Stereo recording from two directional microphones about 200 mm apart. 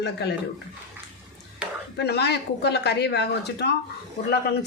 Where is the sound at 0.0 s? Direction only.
55° left (ahead or behind).